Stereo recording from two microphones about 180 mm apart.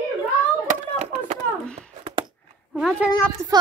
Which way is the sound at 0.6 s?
45° right (ahead or behind).